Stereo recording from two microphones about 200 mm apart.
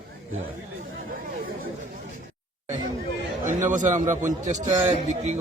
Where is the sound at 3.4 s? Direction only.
40° right (ahead or behind).